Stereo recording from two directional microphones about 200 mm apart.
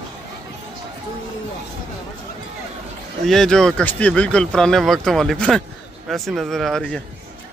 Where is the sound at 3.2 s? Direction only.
Centre (ahead or behind).